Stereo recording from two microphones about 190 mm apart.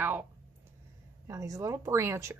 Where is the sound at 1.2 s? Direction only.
15° right (ahead or behind).